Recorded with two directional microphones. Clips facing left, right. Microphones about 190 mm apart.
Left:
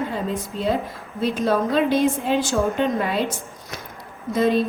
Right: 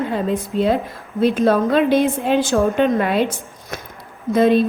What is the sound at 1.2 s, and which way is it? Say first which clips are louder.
A woman's voice: right 5 dB; 60° right (ahead or behind).